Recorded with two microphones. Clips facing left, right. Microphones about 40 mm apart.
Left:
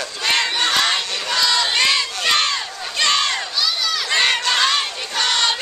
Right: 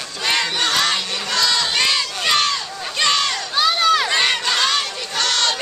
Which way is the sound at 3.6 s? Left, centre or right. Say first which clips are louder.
Right 9 dB; right.